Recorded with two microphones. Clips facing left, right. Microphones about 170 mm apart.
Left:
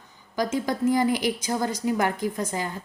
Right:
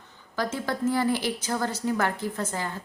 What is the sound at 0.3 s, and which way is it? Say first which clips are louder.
A woman's voice: left 3 dB; 15° left (ahead or behind).